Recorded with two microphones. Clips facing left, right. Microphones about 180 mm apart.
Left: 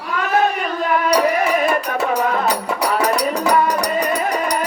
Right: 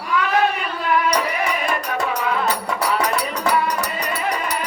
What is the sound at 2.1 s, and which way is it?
Music, 45° left (ahead or behind).